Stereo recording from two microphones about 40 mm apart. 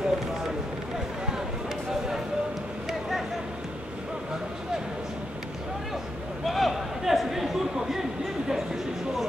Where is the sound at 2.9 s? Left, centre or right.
Centre.